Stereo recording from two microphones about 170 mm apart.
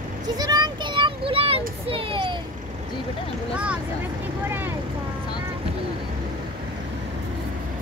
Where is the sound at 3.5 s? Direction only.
5° right (ahead or behind).